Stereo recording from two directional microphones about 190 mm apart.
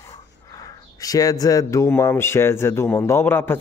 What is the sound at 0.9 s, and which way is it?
Speech, 20° left (ahead or behind).